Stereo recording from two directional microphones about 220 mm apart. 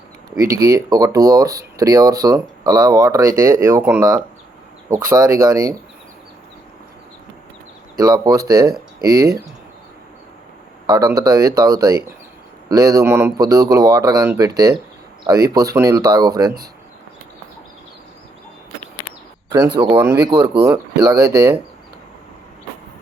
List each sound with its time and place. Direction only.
0.5 s speech: 15° right (ahead or behind)
7.9 s speech: 15° right (ahead or behind)
10.8 s speech: 15° right (ahead or behind)
19.7 s speech: 20° right (ahead or behind)